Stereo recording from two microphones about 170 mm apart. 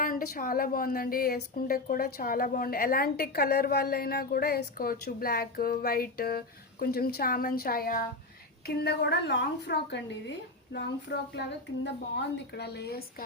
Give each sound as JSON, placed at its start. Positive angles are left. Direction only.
{"t": 0.0, "sound": "a woman's voice", "side_deg": 55}
{"t": 8.6, "sound": "a woman's voice", "side_deg": 70}